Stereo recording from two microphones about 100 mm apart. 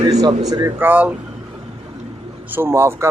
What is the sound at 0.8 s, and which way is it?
Speech, 15° right (ahead or behind).